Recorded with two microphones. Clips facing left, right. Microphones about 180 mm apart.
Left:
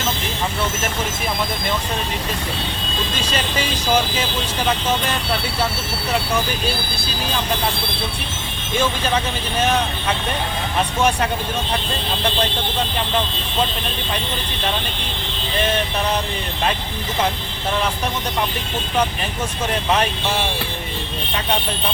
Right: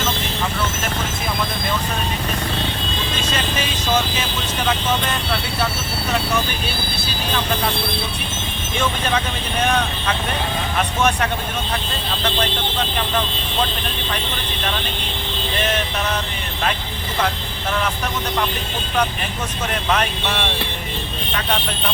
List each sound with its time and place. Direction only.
19.9 s speech: 25° left (ahead or behind)